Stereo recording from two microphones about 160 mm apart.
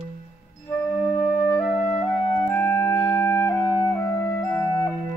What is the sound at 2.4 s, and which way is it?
Music, 15° left (ahead or behind).